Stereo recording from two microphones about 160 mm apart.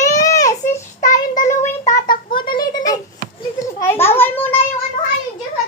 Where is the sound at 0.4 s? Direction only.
50° left (ahead or behind).